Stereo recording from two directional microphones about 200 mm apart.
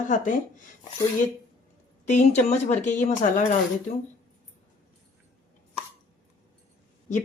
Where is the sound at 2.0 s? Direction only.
35° left (ahead or behind).